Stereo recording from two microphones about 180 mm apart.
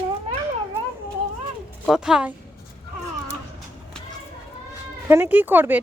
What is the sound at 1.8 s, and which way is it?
Speech, 5° right (ahead or behind).